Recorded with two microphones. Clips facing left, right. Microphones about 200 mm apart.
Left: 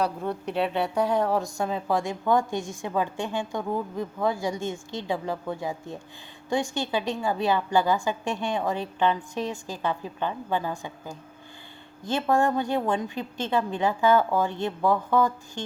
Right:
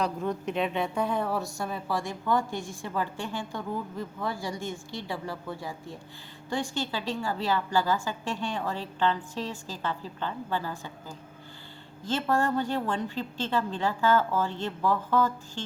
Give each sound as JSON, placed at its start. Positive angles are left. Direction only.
{"t": 0.4, "sound": "a woman's voice", "side_deg": 70}
{"t": 1.3, "sound": "a woman's voice", "side_deg": 15}